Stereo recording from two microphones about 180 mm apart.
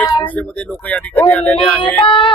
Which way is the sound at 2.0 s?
30° left (ahead or behind).